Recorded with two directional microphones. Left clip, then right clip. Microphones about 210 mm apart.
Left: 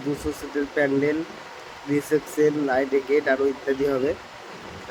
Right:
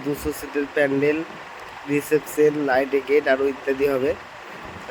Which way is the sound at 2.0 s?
20° right (ahead or behind).